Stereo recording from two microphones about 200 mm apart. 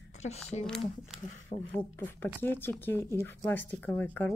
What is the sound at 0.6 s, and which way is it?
Speech, 5° left (ahead or behind).